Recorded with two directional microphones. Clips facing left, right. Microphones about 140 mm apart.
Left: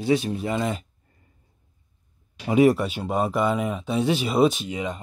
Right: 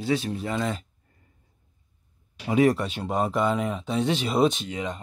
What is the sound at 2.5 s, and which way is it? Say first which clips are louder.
Speech: left 3 dB; 10° left (ahead or behind).